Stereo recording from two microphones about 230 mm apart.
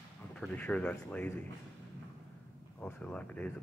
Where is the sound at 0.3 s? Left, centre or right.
Centre.